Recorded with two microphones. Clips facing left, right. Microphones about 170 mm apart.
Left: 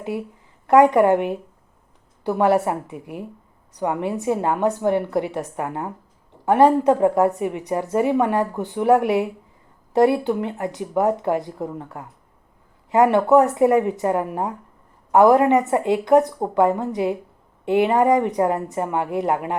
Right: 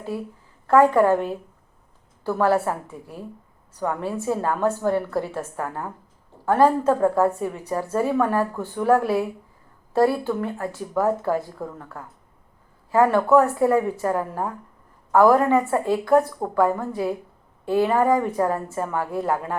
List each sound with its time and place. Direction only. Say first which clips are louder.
0.0 s a woman's voice: left 2 dB; 15° left (ahead or behind)